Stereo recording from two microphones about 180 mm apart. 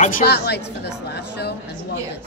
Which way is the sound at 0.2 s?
65° left (ahead or behind).